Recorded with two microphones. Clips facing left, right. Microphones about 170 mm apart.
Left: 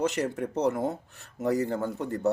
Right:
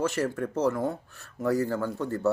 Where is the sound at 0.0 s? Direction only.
20° left (ahead or behind).